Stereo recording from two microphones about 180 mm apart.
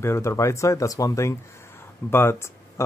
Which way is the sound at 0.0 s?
15° left (ahead or behind).